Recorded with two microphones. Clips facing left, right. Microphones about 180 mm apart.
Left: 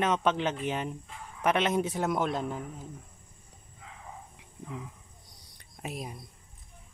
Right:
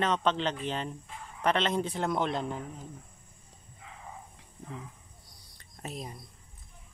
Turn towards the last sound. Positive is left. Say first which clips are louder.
# left 2 dB
turn(degrees=10)  # may be behind; listen again after turning